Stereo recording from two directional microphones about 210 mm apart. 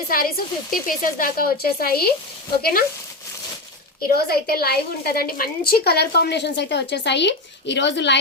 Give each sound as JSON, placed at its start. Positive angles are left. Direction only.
{"t": 0.1, "sound": "a woman's voice", "side_deg": 45}
{"t": 4.1, "sound": "a woman's voice", "side_deg": 45}